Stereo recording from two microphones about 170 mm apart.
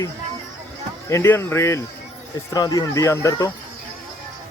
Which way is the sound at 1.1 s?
15° left (ahead or behind).